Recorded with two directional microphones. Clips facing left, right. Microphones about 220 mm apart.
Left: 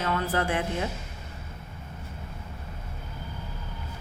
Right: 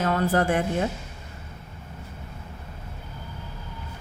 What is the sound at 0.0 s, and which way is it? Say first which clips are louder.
Speech: right 5 dB; 45° right (ahead or behind).